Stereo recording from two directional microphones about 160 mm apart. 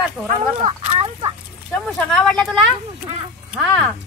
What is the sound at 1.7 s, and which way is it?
Speech, 5° left (ahead or behind).